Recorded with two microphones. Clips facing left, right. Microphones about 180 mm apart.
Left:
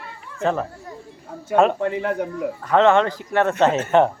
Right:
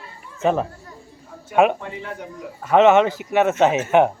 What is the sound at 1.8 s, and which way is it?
Speech, 60° left (ahead or behind).